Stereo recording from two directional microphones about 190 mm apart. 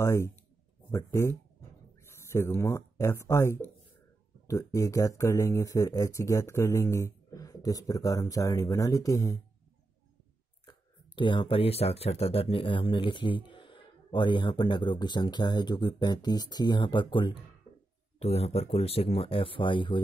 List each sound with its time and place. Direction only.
0.0 s speech: 15° left (ahead or behind)
10.6 s speech: 25° left (ahead or behind)